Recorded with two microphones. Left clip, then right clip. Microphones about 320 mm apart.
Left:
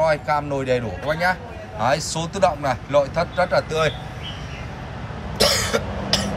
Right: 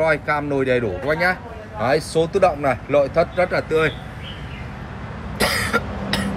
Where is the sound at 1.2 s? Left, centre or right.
Centre.